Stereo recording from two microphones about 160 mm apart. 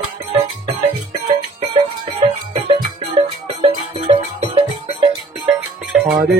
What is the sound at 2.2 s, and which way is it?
Music, 30° right (ahead or behind).